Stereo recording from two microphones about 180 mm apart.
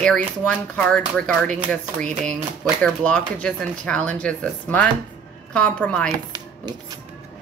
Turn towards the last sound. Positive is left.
turn(degrees=-20)  # may be behind; listen again after turning